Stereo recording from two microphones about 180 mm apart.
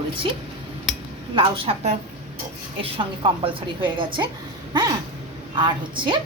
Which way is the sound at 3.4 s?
25° right (ahead or behind).